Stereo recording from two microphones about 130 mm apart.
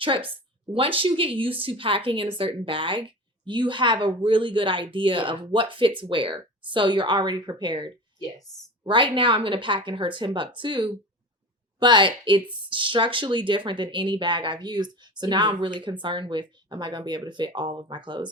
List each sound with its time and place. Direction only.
0.7 s speech: 45° right (ahead or behind)